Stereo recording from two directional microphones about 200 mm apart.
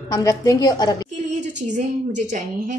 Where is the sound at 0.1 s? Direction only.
15° left (ahead or behind).